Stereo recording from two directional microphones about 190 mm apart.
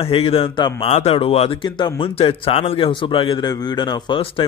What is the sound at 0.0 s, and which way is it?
Speech, 30° left (ahead or behind).